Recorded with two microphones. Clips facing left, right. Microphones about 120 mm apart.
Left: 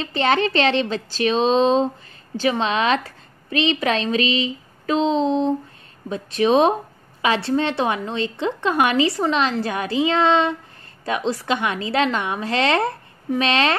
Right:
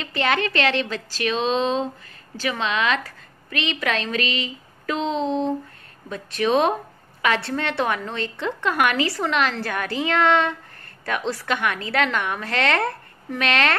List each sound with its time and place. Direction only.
0.0 s a woman's voice: 30° left (ahead or behind)